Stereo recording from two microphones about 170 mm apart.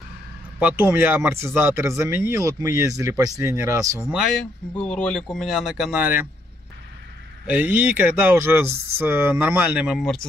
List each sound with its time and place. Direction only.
0.6 s speech: 10° right (ahead or behind)
4.7 s speech: 5° left (ahead or behind); by 6.2 s 10° right (ahead or behind)
7.4 s speech: 10° right (ahead or behind)